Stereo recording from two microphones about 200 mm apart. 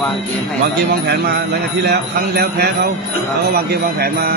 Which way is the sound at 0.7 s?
55° right (ahead or behind).